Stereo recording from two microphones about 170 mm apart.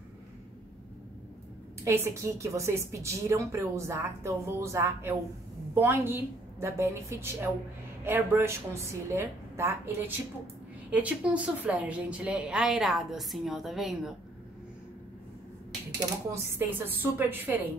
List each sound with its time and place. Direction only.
1.9 s a woman's voice: 15° right (ahead or behind); by 14.1 s centre (ahead or behind)
16.3 s speech: 15° right (ahead or behind)